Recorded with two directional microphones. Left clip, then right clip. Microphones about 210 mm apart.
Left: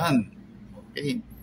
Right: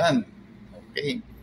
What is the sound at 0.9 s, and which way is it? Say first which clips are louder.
Speech: right 2 dB; 30° left (ahead or behind).